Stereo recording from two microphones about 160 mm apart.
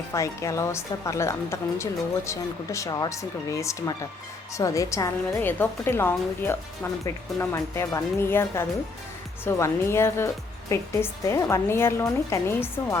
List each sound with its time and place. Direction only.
0.1 s a woman's voice: 20° left (ahead or behind)